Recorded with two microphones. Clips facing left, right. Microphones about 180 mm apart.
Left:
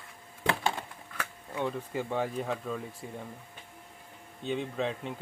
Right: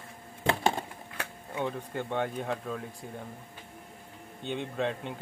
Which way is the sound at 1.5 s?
Centre (ahead or behind).